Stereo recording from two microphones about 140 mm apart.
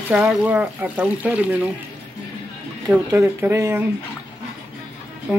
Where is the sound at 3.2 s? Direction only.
20° right (ahead or behind).